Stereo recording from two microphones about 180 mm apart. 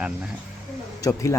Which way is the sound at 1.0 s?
15° left (ahead or behind).